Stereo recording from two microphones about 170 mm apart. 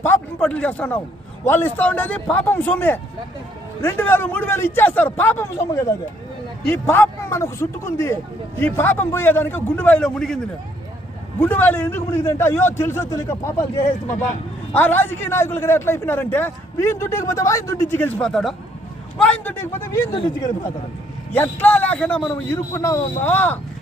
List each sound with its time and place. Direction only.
0.0 s a man's voice: 10° left (ahead or behind)
14.7 s a man's voice: 10° left (ahead or behind)
20.1 s a man's voice: 25° left (ahead or behind)
21.3 s a man's voice: 10° left (ahead or behind)
22.5 s a man's voice: 15° left (ahead or behind)